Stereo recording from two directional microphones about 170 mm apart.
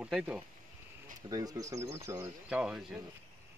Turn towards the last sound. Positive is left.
turn(degrees=-5)  # may be behind; listen again after turning